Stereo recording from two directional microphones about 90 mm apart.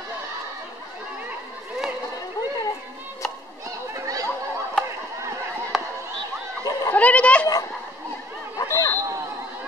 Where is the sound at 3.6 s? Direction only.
40° right (ahead or behind).